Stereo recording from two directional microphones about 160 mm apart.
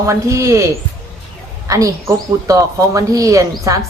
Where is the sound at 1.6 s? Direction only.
20° right (ahead or behind).